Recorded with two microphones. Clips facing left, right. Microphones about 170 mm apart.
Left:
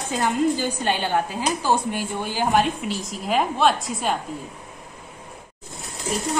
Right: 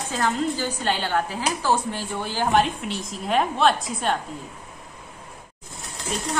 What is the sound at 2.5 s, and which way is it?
A woman's voice, centre (ahead or behind).